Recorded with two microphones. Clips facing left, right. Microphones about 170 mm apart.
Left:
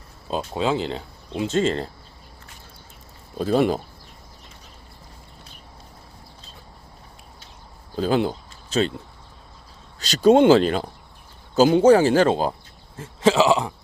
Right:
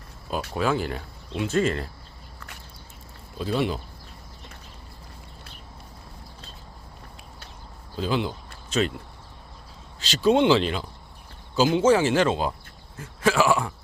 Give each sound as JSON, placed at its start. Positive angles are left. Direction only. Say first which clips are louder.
{"t": 0.5, "sound": "speech", "louder": "left 1 dB", "side_deg": 20}
{"t": 3.3, "sound": "speech", "louder": "left 6 dB", "side_deg": 45}
{"t": 7.9, "sound": "speech", "louder": "left 5 dB", "side_deg": 45}
{"t": 8.7, "sound": "speech", "louder": "left 3 dB", "side_deg": 30}
{"t": 10.0, "sound": "speech", "louder": "left 5 dB", "side_deg": 40}
{"t": 13.0, "sound": "speech", "louder": "left 4 dB", "side_deg": 25}